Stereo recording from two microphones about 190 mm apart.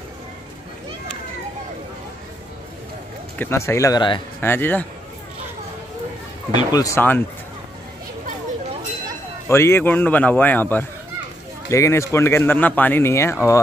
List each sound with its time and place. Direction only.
3.3 s speech: 15° left (ahead or behind)
4.4 s speech: 10° left (ahead or behind)
6.7 s speech: 15° left (ahead or behind)
9.5 s speech: 15° left (ahead or behind)